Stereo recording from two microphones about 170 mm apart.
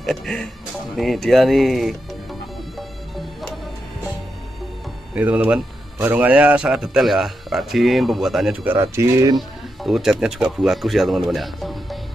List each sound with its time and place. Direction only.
0.0 s a man's voice: centre (ahead or behind)
3.2 s music: centre (ahead or behind)
5.1 s a man's voice: 10° right (ahead or behind)
8.6 s speech: 15° right (ahead or behind)
9.8 s a man's voice: centre (ahead or behind)